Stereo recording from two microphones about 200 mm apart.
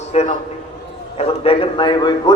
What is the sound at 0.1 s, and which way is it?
A man's voice, 35° left (ahead or behind).